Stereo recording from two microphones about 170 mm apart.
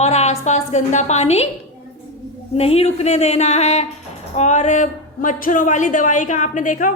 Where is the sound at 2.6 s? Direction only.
35° left (ahead or behind).